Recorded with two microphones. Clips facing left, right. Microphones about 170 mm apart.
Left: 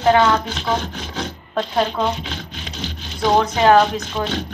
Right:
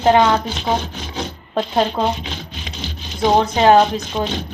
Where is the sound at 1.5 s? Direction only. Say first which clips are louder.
Right 2 dB; 25° right (ahead or behind).